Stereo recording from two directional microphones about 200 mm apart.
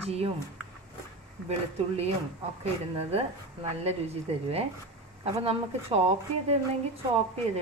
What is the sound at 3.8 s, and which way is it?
A woman's voice, 30° right (ahead or behind).